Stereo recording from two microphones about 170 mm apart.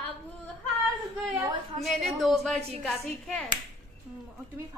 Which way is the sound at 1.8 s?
Centre (ahead or behind).